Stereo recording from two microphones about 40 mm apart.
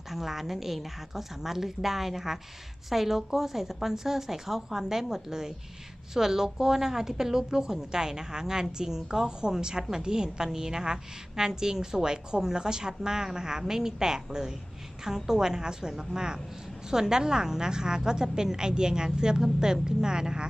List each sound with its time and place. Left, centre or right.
0.1 s a woman's voice: centre